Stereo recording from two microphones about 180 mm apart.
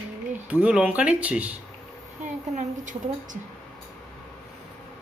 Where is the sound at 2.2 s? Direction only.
45° right (ahead or behind).